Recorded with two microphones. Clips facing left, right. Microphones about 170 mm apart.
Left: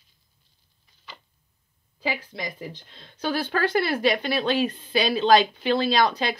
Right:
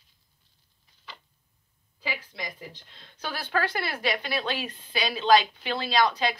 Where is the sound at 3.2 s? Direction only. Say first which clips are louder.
Left 5 dB; 30° left (ahead or behind).